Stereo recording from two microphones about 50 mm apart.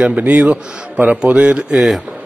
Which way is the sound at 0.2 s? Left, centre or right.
Right.